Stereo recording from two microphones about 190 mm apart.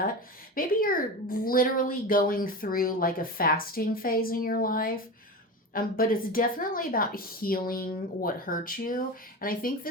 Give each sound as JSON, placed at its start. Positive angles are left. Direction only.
{"t": 0.5, "sound": "speech", "side_deg": 50}